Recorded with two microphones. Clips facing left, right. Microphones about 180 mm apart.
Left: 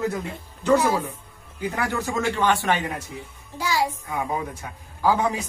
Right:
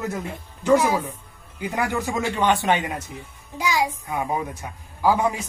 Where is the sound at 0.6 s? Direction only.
15° right (ahead or behind).